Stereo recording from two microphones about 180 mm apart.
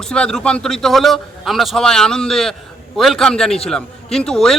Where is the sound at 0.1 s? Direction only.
5° left (ahead or behind).